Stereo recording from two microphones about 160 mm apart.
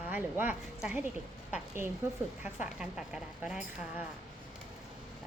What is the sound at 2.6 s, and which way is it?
Speech, 5° right (ahead or behind).